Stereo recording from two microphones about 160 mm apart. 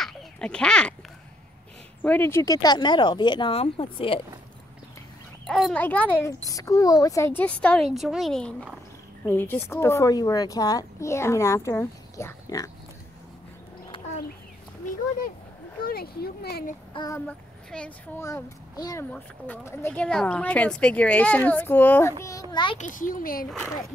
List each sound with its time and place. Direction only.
0.0 s a sound: 5° left (ahead or behind)
2.0 s a woman's voice: 10° left (ahead or behind); by 4.2 s 35° left (ahead or behind)
5.5 s a woman's voice: 5° left (ahead or behind); by 12.7 s 20° left (ahead or behind)
13.9 s cat: 35° left (ahead or behind)
15.8 s speech: 70° left (ahead or behind)
16.9 s child singing: 25° left (ahead or behind)
17.3 s a child's voice: 10° left (ahead or behind)
18.2 s a woman's voice: 20° left (ahead or behind)
19.1 s speech: 10° left (ahead or behind)
22.2 s a woman's voice: 25° left (ahead or behind)
22.8 s speech: 55° left (ahead or behind)